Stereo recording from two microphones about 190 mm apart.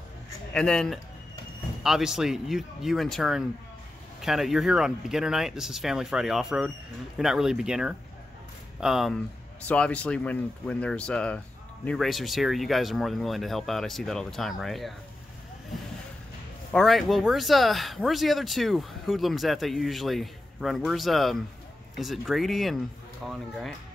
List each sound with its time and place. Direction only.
0.5 s speech: 5° left (ahead or behind)
16.7 s speech: centre (ahead or behind)